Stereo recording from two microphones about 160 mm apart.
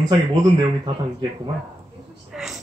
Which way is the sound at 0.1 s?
30° right (ahead or behind).